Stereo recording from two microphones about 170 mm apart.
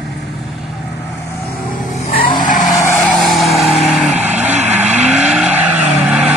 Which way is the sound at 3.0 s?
Centre (ahead or behind).